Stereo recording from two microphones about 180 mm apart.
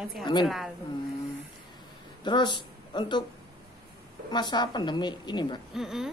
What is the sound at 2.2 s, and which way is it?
Speech, 25° left (ahead or behind).